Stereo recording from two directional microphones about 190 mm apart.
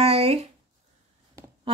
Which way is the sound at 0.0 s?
30° right (ahead or behind).